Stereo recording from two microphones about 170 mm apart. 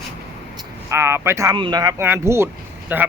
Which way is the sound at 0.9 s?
15° right (ahead or behind).